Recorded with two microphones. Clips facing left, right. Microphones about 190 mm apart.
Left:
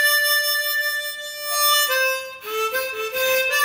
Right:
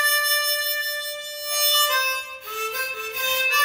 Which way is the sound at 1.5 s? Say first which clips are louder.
Left 2 dB; 55° left (ahead or behind).